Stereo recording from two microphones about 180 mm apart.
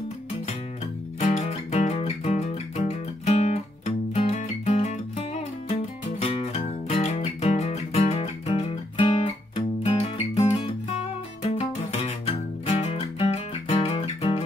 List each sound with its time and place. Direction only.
1.2 s music: 40° left (ahead or behind)